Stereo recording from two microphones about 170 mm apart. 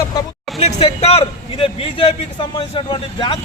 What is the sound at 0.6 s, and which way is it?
A man's voice, 35° left (ahead or behind).